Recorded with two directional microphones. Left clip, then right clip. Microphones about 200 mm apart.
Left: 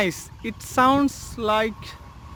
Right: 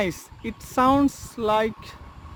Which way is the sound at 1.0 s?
15° right (ahead or behind).